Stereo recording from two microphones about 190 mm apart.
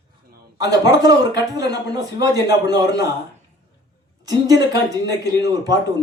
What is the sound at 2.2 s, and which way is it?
Speech, 20° right (ahead or behind).